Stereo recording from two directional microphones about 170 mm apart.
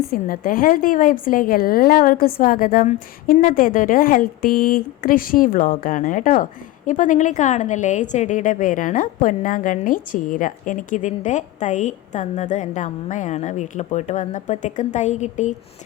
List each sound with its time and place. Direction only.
0.1 s a woman's voice: 55° left (ahead or behind)
2.8 s a woman's voice: 45° left (ahead or behind)